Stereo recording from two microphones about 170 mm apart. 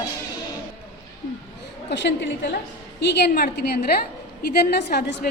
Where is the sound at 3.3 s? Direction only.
70° left (ahead or behind).